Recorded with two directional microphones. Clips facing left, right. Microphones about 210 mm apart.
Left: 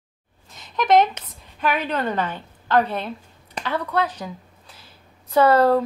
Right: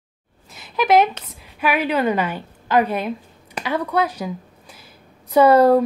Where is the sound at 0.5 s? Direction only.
10° right (ahead or behind).